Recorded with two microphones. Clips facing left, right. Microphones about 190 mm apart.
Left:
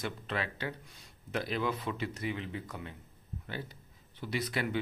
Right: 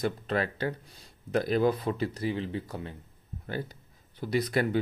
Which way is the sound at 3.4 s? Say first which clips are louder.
Right 7 dB; 45° right (ahead or behind).